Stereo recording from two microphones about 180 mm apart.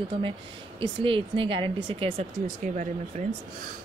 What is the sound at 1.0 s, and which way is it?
Speech, 30° right (ahead or behind).